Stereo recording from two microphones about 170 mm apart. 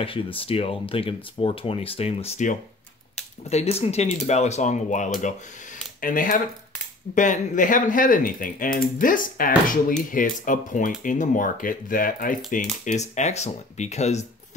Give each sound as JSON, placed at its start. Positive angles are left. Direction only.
{"t": 0.0, "sound": "speech", "side_deg": 30}